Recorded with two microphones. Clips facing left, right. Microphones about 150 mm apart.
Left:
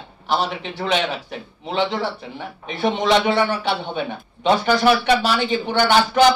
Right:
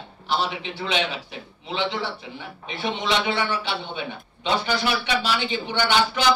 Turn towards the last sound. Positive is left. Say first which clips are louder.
# left 6 dB
turn(degrees=45)  # may be behind; listen again after turning